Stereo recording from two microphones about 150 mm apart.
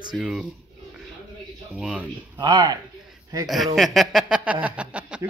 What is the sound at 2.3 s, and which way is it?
Speech, 30° right (ahead or behind).